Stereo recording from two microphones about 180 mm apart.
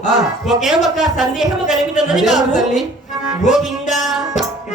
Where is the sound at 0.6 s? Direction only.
Centre (ahead or behind).